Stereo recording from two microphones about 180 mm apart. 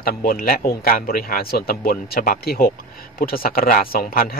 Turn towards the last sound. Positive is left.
turn(degrees=55)  # may be behind; listen again after turning